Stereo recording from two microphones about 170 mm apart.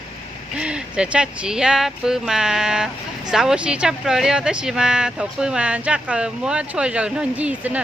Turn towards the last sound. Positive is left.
turn(degrees=-10)  # may be behind; listen again after turning